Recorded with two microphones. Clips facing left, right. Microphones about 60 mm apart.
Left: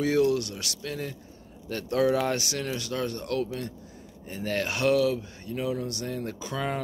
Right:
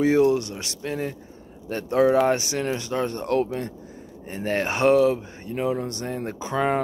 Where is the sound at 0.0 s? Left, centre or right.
Right.